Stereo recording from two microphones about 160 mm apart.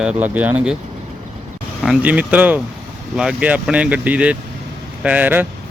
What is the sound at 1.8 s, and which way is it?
Speech, 10° right (ahead or behind).